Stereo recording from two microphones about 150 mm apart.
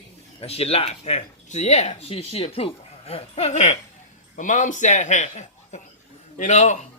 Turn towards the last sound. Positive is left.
turn(degrees=50)  # may be behind; listen again after turning